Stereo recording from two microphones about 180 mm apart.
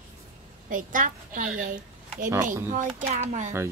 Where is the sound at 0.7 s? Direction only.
45° right (ahead or behind).